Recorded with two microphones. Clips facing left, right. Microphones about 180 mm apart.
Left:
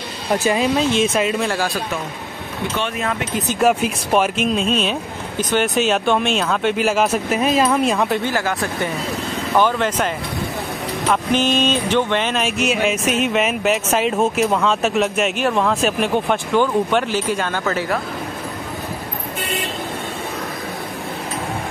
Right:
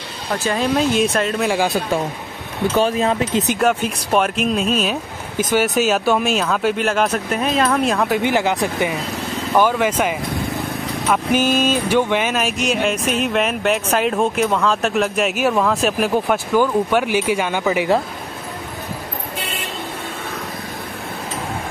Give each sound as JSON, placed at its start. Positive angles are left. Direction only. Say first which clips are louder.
{"t": 0.5, "sound": "speech", "louder": "right 1 dB", "side_deg": 0}
{"t": 2.8, "sound": "speech", "louder": "right 7 dB", "side_deg": -30}
{"t": 3.5, "sound": "speech", "louder": "left 1 dB", "side_deg": 5}
{"t": 8.2, "sound": "speech", "louder": "right 3 dB", "side_deg": -20}